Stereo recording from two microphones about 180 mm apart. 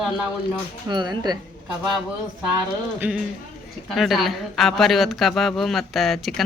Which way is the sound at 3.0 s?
10° right (ahead or behind).